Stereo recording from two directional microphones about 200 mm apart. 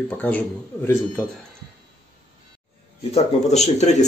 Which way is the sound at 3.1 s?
35° left (ahead or behind).